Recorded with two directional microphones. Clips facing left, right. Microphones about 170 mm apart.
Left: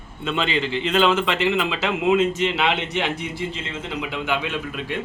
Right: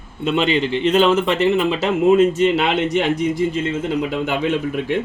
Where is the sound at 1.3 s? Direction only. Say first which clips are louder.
Right 5 dB; 40° right (ahead or behind).